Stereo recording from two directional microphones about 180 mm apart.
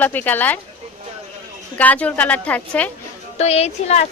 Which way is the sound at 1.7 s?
10° left (ahead or behind).